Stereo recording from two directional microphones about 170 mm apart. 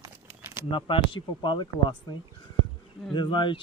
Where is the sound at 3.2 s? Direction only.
30° left (ahead or behind).